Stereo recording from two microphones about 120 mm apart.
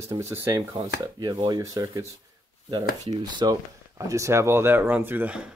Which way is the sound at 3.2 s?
40° right (ahead or behind).